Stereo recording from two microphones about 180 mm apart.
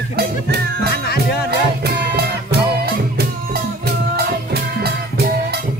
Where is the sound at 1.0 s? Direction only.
60° left (ahead or behind).